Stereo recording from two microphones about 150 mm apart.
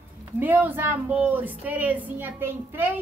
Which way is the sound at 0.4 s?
10° right (ahead or behind).